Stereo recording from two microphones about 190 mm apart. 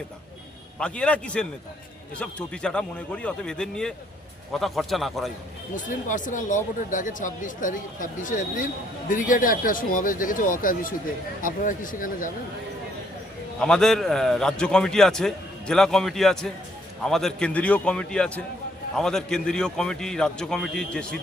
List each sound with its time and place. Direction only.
0.8 s a man's voice: 5° left (ahead or behind)
5.7 s speech: 40° left (ahead or behind)
13.6 s a man's voice: 5° left (ahead or behind)